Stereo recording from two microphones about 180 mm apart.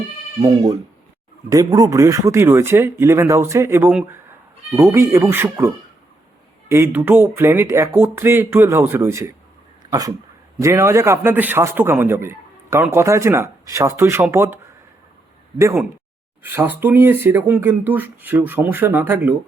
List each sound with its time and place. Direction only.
0.4 s a man's voice: 20° right (ahead or behind)